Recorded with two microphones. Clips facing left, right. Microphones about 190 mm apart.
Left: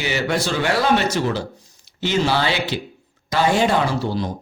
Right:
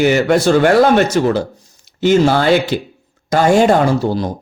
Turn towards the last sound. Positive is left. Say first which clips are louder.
# right 7 dB
turn(degrees=-45)  # may be behind; listen again after turning